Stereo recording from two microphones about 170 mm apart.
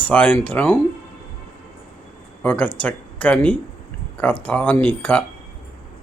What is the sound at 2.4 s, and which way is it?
Speech, 10° left (ahead or behind).